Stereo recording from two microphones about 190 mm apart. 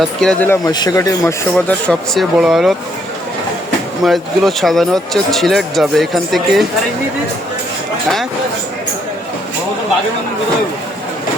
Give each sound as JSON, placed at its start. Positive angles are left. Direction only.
{"t": 0.0, "sound": "speech", "side_deg": 0}
{"t": 1.5, "sound": "speech", "side_deg": 5}
{"t": 4.0, "sound": "speech", "side_deg": 0}